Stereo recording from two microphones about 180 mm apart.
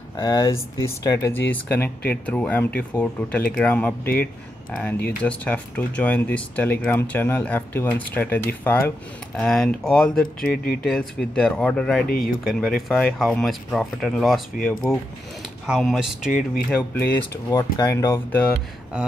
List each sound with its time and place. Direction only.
0.2 s speech: 20° left (ahead or behind); by 16.4 s 5° right (ahead or behind)
16.7 s speech: 10° left (ahead or behind)
17.5 s speech: 20° left (ahead or behind)